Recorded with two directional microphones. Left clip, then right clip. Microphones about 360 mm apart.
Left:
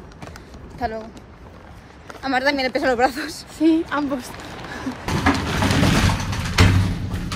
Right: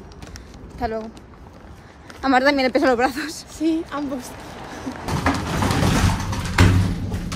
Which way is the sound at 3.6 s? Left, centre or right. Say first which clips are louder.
Left 5 dB; centre.